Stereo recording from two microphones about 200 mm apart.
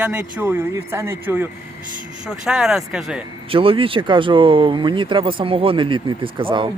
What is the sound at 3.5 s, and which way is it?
Speech, 25° right (ahead or behind).